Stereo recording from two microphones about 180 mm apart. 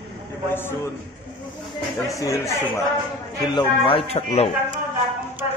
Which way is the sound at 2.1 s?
15° left (ahead or behind).